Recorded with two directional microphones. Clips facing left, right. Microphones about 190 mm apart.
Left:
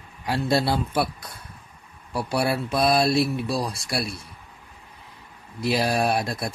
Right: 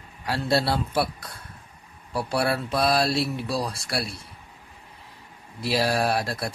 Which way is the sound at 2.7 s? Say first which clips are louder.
Left 3 dB; 15° left (ahead or behind).